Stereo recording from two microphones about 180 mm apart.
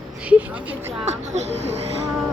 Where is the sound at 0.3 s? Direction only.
10° right (ahead or behind).